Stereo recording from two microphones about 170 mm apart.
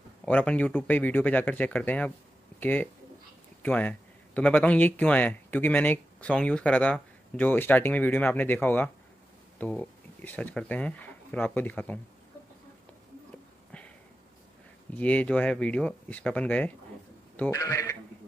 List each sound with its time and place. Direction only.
0.2 s speech: 5° left (ahead or behind)
15.0 s speech: 10° left (ahead or behind)
17.5 s a man's voice: 20° left (ahead or behind)